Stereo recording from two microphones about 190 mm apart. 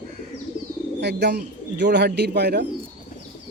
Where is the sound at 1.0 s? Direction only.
60° right (ahead or behind).